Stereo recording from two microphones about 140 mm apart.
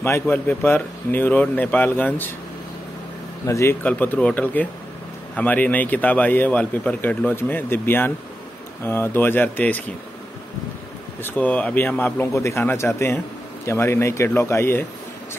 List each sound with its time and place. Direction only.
0.0 s a man's voice: 15° left (ahead or behind)
3.4 s speech: 20° left (ahead or behind)
3.8 s a man's voice: 10° left (ahead or behind)
11.2 s a man's voice: 10° left (ahead or behind)